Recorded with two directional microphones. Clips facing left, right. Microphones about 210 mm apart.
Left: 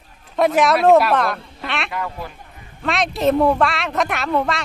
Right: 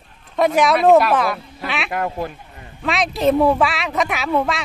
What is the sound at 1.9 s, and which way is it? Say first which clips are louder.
Speech: right 4 dB; 50° right (ahead or behind).